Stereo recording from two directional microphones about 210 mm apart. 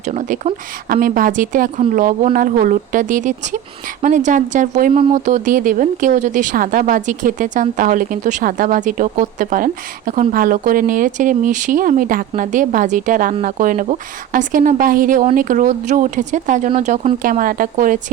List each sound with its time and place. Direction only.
0.0 s speech: 35° right (ahead or behind)